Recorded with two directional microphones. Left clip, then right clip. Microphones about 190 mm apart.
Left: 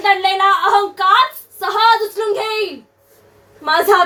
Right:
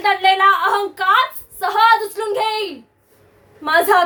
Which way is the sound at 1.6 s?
25° right (ahead or behind).